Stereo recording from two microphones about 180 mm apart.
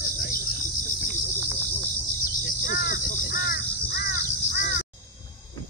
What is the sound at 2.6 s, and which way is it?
Crow, 45° left (ahead or behind).